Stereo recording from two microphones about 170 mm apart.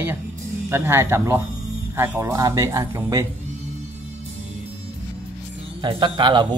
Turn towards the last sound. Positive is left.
turn(degrees=-25)  # may be behind; listen again after turning